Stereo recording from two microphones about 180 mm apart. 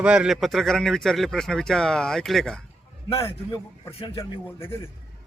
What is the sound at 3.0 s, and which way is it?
A man's voice, 30° left (ahead or behind).